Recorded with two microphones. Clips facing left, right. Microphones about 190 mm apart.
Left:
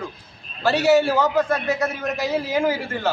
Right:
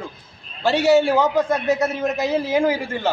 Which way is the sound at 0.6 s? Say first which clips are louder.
Right 1 dB; 15° right (ahead or behind).